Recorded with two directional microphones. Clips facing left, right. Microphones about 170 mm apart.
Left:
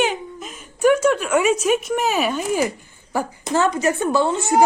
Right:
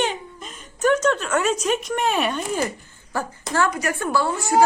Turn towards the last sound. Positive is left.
turn(degrees=25)  # may be behind; listen again after turning